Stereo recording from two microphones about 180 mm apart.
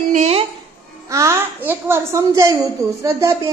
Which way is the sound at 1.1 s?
15° right (ahead or behind).